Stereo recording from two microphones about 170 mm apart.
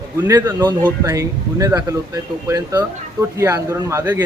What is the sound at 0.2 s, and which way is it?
Speech, 15° right (ahead or behind).